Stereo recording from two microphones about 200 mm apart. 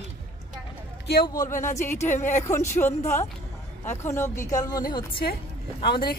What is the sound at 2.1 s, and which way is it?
Speech, 35° left (ahead or behind).